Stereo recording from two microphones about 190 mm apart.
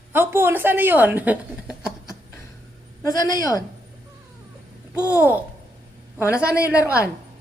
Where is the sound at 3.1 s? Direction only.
20° left (ahead or behind).